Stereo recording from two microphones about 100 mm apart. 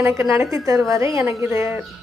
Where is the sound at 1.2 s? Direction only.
20° right (ahead or behind).